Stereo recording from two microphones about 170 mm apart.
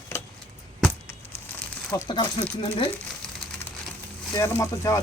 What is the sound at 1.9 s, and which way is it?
Speech, 20° left (ahead or behind).